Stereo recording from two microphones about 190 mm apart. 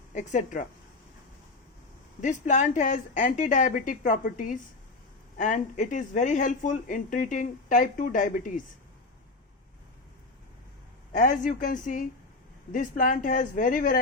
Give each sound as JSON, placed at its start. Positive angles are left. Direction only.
{"t": 0.1, "sound": "speech", "side_deg": 40}
{"t": 2.2, "sound": "speech", "side_deg": 40}
{"t": 11.2, "sound": "speech", "side_deg": 45}